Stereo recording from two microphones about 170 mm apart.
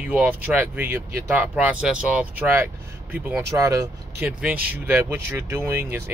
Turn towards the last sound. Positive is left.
turn(degrees=-15)  # may be behind; listen again after turning